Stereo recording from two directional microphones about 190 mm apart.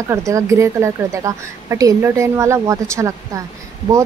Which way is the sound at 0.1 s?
15° right (ahead or behind).